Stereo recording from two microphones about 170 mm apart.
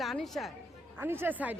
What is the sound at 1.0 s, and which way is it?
Speech, 10° right (ahead or behind).